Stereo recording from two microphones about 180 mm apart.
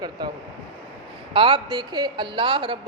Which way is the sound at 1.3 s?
30° right (ahead or behind).